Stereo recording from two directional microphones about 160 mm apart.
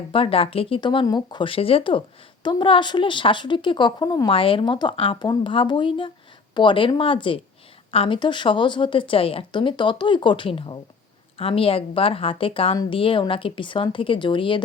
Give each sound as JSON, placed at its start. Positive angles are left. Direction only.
{"t": 0.1, "sound": "speech", "side_deg": 35}